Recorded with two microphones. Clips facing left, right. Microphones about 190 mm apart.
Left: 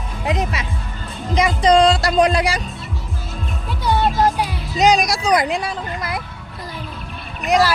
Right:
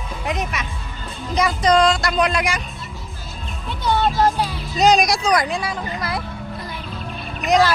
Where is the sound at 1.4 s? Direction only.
25° left (ahead or behind).